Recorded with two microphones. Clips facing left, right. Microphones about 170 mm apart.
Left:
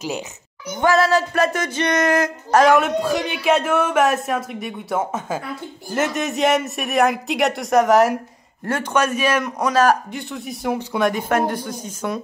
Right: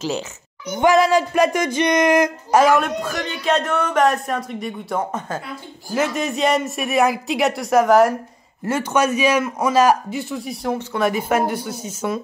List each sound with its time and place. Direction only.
0.7 s a man's voice: 15° right (ahead or behind)
2.6 s a man's voice: centre (ahead or behind)
3.0 s a man's voice: 15° left (ahead or behind)
10.7 s speech: 15° left (ahead or behind)
11.0 s a man's voice: 5° right (ahead or behind)